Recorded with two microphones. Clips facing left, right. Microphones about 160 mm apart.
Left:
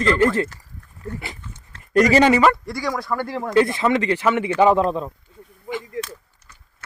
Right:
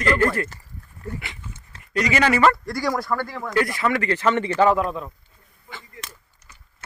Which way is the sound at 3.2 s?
30° left (ahead or behind).